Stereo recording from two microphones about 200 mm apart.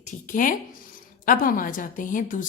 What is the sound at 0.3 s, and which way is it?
A woman's voice, 40° left (ahead or behind).